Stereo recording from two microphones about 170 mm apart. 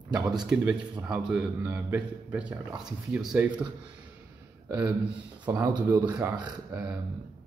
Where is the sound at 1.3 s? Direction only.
10° right (ahead or behind).